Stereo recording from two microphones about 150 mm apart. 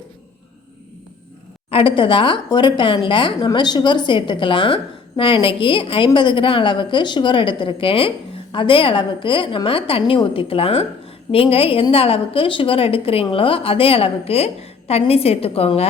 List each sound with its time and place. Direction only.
1.7 s a woman's voice: 35° left (ahead or behind)